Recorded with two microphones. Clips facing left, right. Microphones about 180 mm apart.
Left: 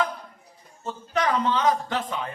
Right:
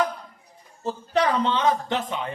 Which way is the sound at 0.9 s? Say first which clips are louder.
Right 3 dB; 30° right (ahead or behind).